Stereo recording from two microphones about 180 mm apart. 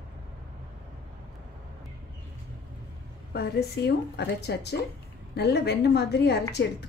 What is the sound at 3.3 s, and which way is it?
A woman's voice, 60° left (ahead or behind).